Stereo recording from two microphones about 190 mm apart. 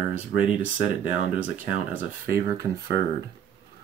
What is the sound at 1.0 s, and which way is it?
Speech, 5° right (ahead or behind).